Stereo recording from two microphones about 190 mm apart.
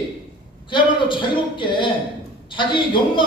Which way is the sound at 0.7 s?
25° left (ahead or behind).